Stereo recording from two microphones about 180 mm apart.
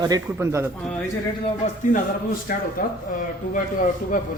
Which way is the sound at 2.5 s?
50° left (ahead or behind).